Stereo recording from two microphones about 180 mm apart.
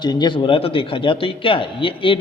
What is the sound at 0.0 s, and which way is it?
A man's voice, 25° left (ahead or behind).